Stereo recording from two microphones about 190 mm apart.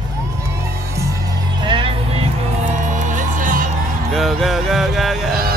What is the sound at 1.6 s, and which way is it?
Music, 25° right (ahead or behind).